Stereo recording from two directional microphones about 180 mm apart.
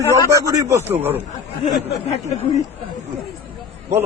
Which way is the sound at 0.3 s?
15° right (ahead or behind).